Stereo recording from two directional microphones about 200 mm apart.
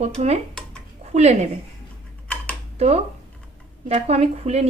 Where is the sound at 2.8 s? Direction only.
30° right (ahead or behind).